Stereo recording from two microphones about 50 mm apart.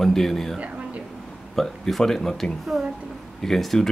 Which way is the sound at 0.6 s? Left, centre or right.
Right.